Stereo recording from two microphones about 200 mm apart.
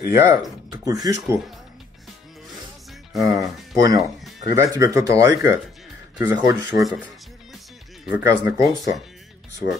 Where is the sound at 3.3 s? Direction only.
15° right (ahead or behind).